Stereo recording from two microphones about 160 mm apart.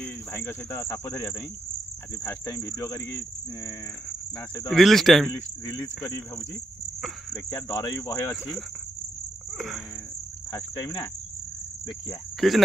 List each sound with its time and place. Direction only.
0.0 s cricket: 15° left (ahead or behind)
4.6 s speech: centre (ahead or behind)
7.3 s speech: 20° left (ahead or behind)
12.4 s speech: centre (ahead or behind)